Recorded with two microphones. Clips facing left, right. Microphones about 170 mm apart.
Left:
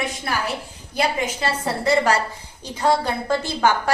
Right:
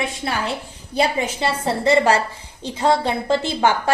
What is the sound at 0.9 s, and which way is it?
A woman's voice, 30° right (ahead or behind).